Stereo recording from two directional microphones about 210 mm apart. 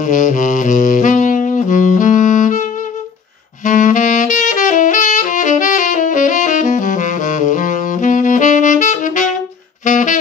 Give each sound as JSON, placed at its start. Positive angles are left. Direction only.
{"t": 0.0, "sound": "saxophone", "side_deg": 35}